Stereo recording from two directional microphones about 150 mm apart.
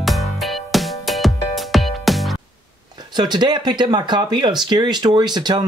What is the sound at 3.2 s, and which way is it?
Speech, 30° right (ahead or behind).